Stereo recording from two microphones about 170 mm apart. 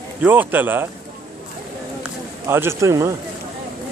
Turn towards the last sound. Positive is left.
turn(degrees=-20)  # may be behind; listen again after turning